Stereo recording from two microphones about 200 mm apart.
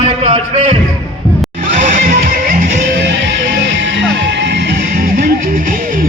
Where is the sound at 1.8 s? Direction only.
40° right (ahead or behind).